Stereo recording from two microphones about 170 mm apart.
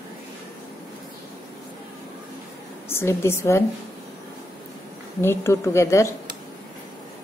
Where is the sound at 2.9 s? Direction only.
15° left (ahead or behind).